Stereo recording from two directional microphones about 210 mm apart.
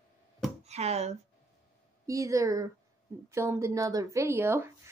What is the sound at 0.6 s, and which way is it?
Speech, 30° right (ahead or behind).